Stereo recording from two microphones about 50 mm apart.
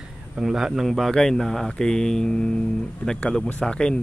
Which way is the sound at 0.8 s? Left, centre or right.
Centre.